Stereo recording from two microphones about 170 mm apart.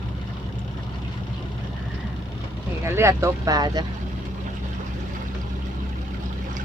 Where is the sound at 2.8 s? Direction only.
15° right (ahead or behind).